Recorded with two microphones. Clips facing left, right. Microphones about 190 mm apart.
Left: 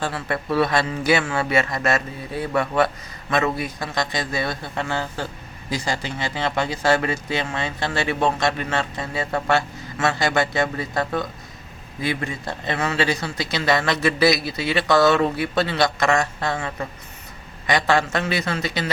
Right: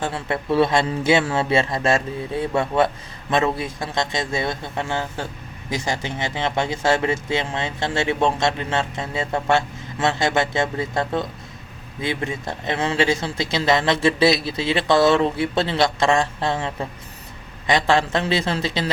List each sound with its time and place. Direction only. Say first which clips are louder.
0.0 s speech: right 1 dB; 25° right (ahead or behind)